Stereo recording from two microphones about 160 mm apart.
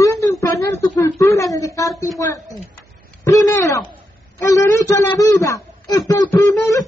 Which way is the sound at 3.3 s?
20° left (ahead or behind).